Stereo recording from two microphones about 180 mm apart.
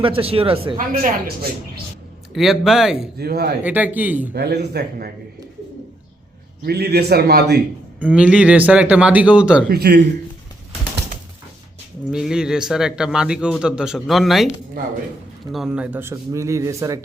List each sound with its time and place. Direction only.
0.2 s speech: 30° right (ahead or behind)
0.9 s a man's voice: 55° right (ahead or behind)
2.3 s speech: centre (ahead or behind)
3.2 s a man's voice: 60° right (ahead or behind)
3.6 s speech: 10° right (ahead or behind)
4.4 s a man's voice: 65° right (ahead or behind)
6.6 s a man's voice: 65° right (ahead or behind)
7.9 s speech: 10° right (ahead or behind)
9.6 s a man's voice: 60° right (ahead or behind)
12.1 s speech: 5° right (ahead or behind)
15.5 s speech: 5° right (ahead or behind)